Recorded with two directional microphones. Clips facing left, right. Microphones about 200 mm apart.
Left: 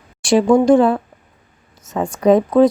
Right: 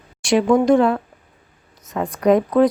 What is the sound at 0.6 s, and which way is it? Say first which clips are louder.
Speech: left 3 dB; 30° left (ahead or behind).